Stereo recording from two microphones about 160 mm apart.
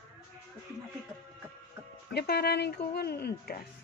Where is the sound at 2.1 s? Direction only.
80° left.